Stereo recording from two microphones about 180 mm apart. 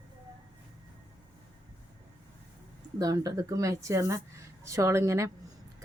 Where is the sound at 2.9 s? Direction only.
20° right (ahead or behind).